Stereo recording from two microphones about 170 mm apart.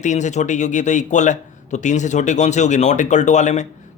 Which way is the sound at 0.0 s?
45° left (ahead or behind).